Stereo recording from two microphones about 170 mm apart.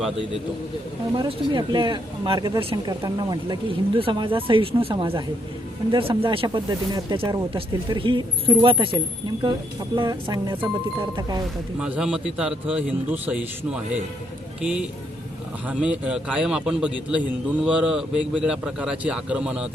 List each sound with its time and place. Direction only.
1.1 s speech: 30° right (ahead or behind)
11.8 s a man's voice: 5° right (ahead or behind)